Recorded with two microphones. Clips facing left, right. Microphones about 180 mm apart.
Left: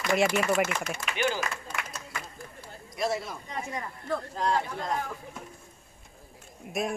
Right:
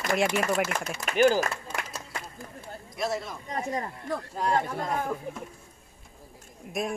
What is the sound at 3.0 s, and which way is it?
Speech, centre (ahead or behind).